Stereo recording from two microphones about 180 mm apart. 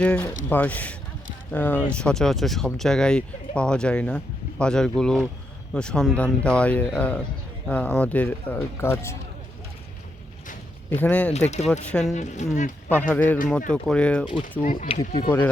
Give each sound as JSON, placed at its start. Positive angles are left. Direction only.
{"t": 0.5, "sound": "speech", "side_deg": 10}
{"t": 10.8, "sound": "speech", "side_deg": 10}
{"t": 11.3, "sound": "speech", "side_deg": 35}
{"t": 11.7, "sound": "speech", "side_deg": 5}
{"t": 12.1, "sound": "speech", "side_deg": 40}
{"t": 12.9, "sound": "speech", "side_deg": 10}
{"t": 14.6, "sound": "speech", "side_deg": 45}
{"t": 14.8, "sound": "speech", "side_deg": 35}